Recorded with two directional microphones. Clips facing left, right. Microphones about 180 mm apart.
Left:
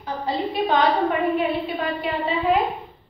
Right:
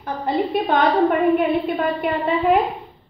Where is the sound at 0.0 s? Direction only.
55° right (ahead or behind).